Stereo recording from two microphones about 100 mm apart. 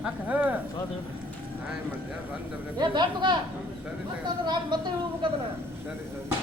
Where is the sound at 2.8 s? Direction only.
50° right (ahead or behind).